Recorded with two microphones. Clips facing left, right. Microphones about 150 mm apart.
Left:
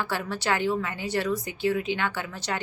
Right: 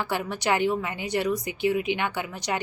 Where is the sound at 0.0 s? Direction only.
15° right (ahead or behind).